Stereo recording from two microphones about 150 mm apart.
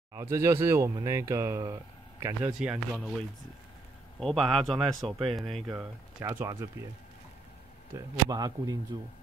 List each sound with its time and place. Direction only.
0.1 s speech: 20° right (ahead or behind); by 5.8 s centre (ahead or behind)
6.2 s speech: 20° right (ahead or behind)
7.9 s speech: 25° right (ahead or behind)